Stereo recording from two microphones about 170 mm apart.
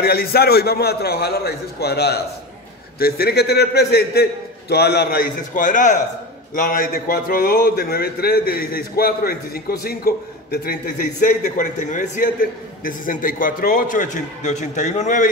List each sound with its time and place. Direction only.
0.0 s a man's voice: 65° left (ahead or behind); by 15.2 s 45° left (ahead or behind)